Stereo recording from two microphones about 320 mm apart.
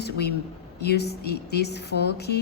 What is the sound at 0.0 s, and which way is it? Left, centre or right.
A woman's voice, left.